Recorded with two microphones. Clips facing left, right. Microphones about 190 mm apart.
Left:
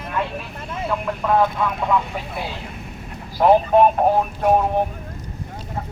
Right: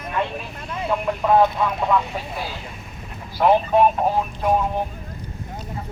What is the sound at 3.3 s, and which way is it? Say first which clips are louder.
Speech: left 2 dB; 40° left (ahead or behind).